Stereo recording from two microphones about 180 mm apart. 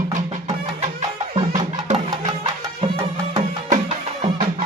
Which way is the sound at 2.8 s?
30° right (ahead or behind).